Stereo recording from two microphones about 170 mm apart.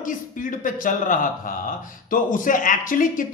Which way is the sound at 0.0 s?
50° left (ahead or behind).